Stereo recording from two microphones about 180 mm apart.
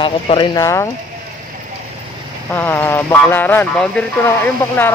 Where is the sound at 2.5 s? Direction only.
10° left (ahead or behind).